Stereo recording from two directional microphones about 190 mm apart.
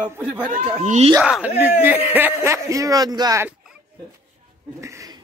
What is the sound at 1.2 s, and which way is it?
Speech, 5° right (ahead or behind).